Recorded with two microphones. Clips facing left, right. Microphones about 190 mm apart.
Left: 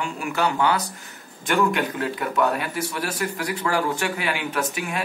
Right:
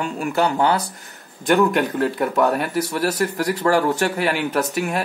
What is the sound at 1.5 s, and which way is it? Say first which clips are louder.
Speech: right 5 dB; 50° right (ahead or behind).